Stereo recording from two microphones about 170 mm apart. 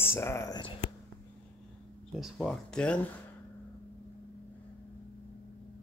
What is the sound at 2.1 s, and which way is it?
Speech, centre (ahead or behind).